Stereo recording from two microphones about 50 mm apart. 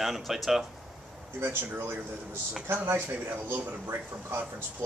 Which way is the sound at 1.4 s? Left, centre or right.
Right.